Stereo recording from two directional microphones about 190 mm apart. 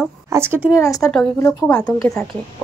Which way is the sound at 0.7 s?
15° left (ahead or behind).